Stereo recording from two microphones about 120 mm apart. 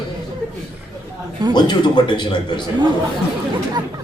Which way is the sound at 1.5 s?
35° left (ahead or behind).